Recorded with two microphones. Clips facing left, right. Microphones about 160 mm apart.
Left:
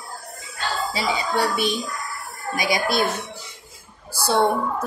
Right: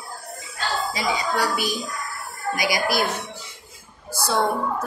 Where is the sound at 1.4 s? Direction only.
25° left (ahead or behind).